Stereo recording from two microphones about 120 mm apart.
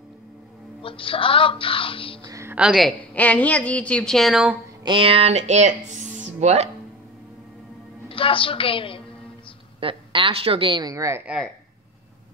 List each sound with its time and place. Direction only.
0.8 s speech: 50° left (ahead or behind)
2.2 s a sound: 25° right (ahead or behind)
2.5 s a woman's voice: 5° right (ahead or behind)
3.2 s a woman's voice: 10° left (ahead or behind); by 4.6 s 5° right (ahead or behind)
4.8 s speech: 45° right (ahead or behind); by 6.7 s 70° right (ahead or behind)
8.1 s speech: 45° left (ahead or behind)
9.8 s a woman's voice: 45° right (ahead or behind)
10.9 s speech: 25° right (ahead or behind)